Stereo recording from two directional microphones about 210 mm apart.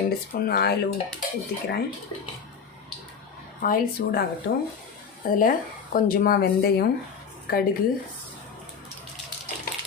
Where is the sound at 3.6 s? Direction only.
40° left (ahead or behind).